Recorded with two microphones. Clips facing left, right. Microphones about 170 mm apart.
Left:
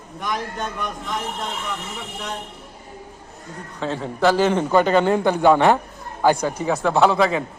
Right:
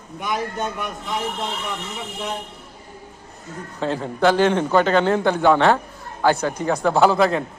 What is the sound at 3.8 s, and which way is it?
A man's voice, centre (ahead or behind).